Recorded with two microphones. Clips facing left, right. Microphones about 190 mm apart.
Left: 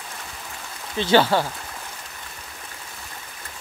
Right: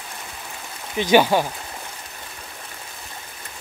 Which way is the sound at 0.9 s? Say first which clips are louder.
Right 2 dB; 15° right (ahead or behind).